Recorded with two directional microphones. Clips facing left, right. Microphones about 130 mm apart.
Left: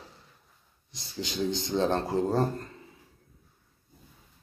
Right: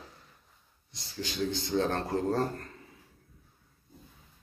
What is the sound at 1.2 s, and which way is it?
Speech, 20° left (ahead or behind).